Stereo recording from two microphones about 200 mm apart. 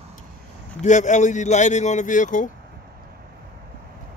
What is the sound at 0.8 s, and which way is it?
A man's voice, 35° left (ahead or behind).